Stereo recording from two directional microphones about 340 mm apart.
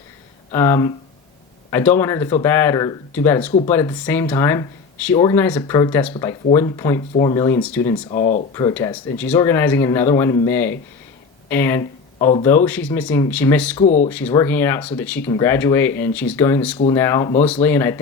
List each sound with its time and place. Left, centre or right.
0.5 s speech: centre
8.2 s speech: left
8.5 s speech: centre
13.7 s speech: centre
14.1 s speech: centre